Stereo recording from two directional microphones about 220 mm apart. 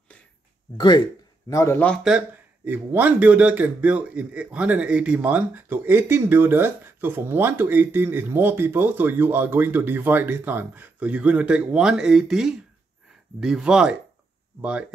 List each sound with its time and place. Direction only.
0.7 s a man's voice: 20° left (ahead or behind)
2.0 s speech: 5° right (ahead or behind)